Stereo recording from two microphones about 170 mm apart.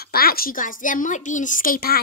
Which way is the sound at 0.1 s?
60° left (ahead or behind).